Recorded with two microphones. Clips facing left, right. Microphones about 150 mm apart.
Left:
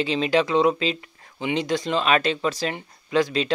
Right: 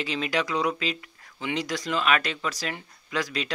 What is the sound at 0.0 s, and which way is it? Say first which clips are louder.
Speech: left 7 dB; 25° left (ahead or behind).